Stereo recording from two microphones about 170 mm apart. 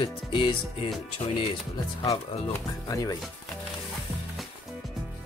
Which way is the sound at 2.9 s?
20° left (ahead or behind).